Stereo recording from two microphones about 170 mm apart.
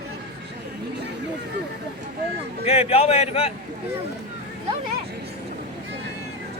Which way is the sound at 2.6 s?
35° left (ahead or behind).